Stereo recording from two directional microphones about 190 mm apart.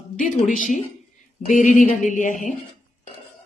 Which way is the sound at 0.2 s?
45° left (ahead or behind).